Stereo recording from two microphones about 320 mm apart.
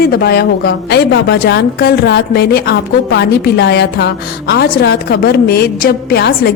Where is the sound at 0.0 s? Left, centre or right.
Left.